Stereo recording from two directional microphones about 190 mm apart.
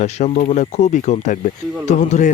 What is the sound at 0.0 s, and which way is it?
Speech, 35° left (ahead or behind).